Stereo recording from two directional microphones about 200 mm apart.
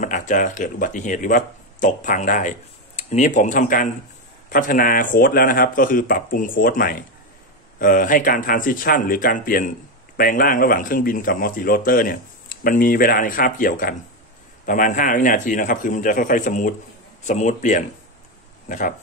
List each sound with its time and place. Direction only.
0.0 s speech: 40° left (ahead or behind)